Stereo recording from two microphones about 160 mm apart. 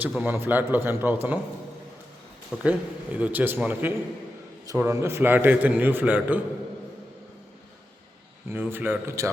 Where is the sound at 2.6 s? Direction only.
10° right (ahead or behind).